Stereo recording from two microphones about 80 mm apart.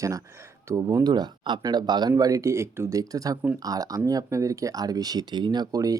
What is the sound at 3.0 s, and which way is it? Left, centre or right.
Speech, right.